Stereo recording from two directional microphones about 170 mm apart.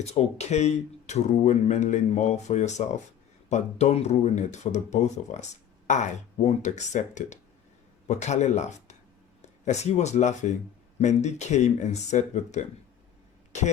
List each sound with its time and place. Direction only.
0.0 s speech: 40° left (ahead or behind)